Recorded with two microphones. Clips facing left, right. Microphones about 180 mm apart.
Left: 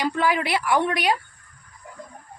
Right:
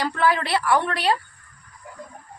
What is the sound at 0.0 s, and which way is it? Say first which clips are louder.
A woman's voice: right 1 dB; 15° left (ahead or behind).